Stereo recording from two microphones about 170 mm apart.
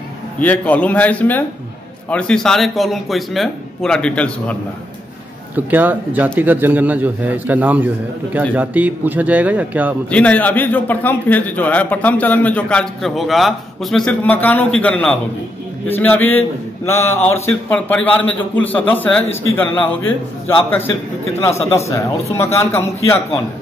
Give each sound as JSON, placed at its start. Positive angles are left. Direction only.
{"t": 0.4, "sound": "a man's voice", "side_deg": 10}
{"t": 5.7, "sound": "a man's voice", "side_deg": -10}
{"t": 10.1, "sound": "a man's voice", "side_deg": 10}